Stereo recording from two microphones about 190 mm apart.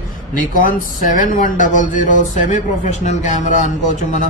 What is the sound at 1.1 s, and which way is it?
Speech, 45° left (ahead or behind).